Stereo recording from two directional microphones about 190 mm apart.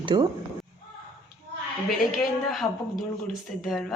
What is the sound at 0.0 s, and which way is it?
Speech, 25° right (ahead or behind).